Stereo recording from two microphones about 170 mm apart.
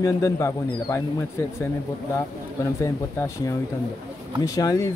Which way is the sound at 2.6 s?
15° left (ahead or behind).